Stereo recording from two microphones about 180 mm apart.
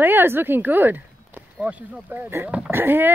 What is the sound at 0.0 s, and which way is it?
Speech, 10° right (ahead or behind).